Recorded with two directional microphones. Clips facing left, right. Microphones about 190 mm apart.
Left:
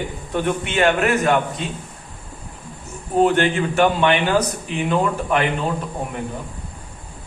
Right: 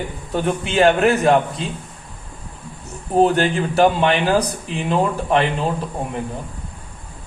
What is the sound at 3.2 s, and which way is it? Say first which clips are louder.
Speech: even; 35° right (ahead or behind).